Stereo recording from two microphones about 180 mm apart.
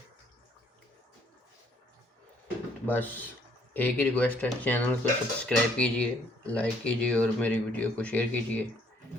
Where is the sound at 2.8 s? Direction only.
10° left (ahead or behind).